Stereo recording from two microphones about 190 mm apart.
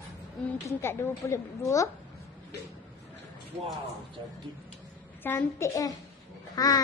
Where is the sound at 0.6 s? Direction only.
15° left (ahead or behind).